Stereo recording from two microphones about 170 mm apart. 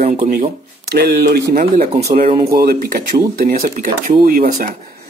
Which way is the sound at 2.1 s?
35° right (ahead or behind).